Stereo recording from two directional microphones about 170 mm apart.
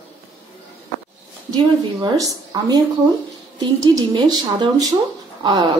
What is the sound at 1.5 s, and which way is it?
Speech, 20° right (ahead or behind).